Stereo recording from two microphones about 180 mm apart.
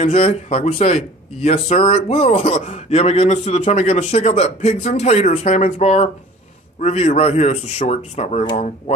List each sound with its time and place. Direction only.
0.0 s a man's voice: 35° left (ahead or behind)